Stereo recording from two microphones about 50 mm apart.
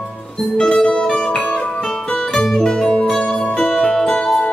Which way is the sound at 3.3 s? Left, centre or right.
Left.